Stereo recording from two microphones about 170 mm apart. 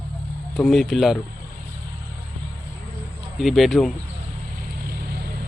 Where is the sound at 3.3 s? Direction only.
Centre (ahead or behind).